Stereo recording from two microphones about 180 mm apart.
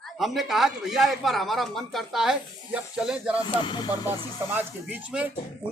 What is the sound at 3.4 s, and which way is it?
Speech, 25° left (ahead or behind).